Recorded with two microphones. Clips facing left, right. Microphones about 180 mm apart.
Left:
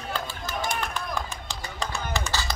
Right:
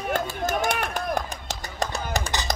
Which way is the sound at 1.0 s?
40° right (ahead or behind).